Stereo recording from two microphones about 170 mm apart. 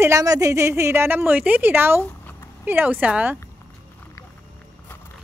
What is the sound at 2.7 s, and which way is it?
Speech, 10° right (ahead or behind).